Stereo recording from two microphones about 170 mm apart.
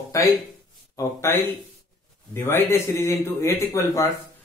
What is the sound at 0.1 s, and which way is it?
Speech, 15° left (ahead or behind).